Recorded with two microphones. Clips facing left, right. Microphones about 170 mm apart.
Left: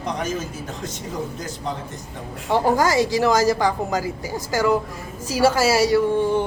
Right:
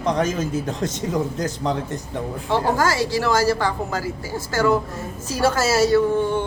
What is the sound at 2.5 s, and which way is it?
Speech, 15° left (ahead or behind).